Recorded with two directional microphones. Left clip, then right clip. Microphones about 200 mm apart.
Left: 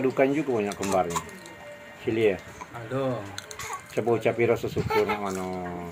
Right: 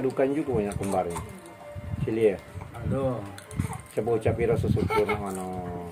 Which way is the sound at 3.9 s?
30° left (ahead or behind).